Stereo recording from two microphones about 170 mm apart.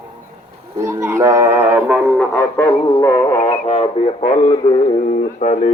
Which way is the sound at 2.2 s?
15° left (ahead or behind).